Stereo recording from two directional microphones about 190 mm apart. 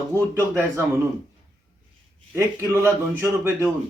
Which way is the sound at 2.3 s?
15° right (ahead or behind).